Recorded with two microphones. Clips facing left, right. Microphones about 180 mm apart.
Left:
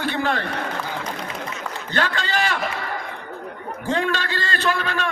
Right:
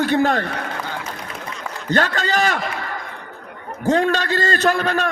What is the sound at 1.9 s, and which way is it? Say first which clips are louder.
Speech: right 5 dB; 45° right (ahead or behind).